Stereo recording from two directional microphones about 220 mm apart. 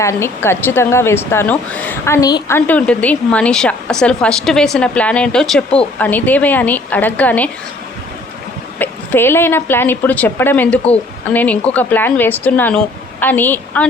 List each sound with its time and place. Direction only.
0.0 s a woman's voice: 10° left (ahead or behind)
8.8 s a woman's voice: 10° left (ahead or behind)